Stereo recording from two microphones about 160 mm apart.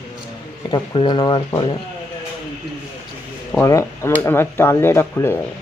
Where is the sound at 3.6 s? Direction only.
15° left (ahead or behind).